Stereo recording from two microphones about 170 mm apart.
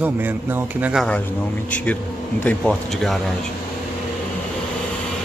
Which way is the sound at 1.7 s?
10° left (ahead or behind).